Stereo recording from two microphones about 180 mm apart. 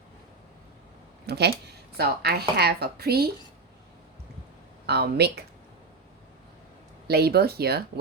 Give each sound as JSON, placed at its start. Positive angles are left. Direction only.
{"t": 1.3, "sound": "speech", "side_deg": -65}
{"t": 4.9, "sound": "speech", "side_deg": -65}
{"t": 7.1, "sound": "speech", "side_deg": -60}